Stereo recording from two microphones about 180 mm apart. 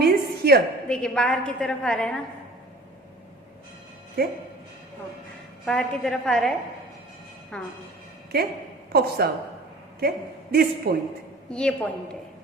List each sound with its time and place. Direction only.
0.0 s a sound: 60° right (ahead or behind)
0.9 s a woman's voice: 5° left (ahead or behind)
4.2 s a woman's voice: 60° right (ahead or behind)
5.6 s a woman's voice: 5° left (ahead or behind)
7.5 s a woman's voice: 5° left (ahead or behind)
8.3 s a woman's voice: 60° right (ahead or behind)
11.4 s a woman's voice: 5° left (ahead or behind)